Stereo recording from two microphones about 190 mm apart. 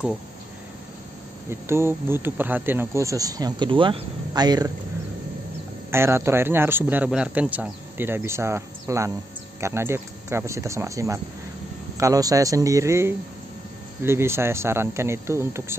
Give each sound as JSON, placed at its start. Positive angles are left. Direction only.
{"t": 1.5, "sound": "speech", "side_deg": -15}
{"t": 5.9, "sound": "speech", "side_deg": -15}